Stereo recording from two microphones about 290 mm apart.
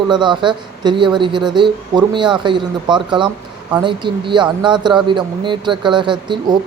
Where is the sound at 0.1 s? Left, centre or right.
Centre.